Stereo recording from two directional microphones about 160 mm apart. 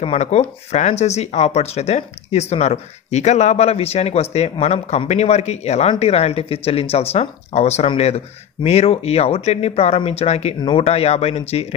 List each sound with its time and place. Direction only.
0.0 s speech: 40° left (ahead or behind)